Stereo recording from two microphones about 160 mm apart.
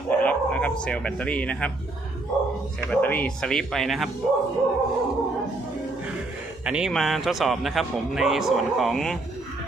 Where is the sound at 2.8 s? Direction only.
10° left (ahead or behind).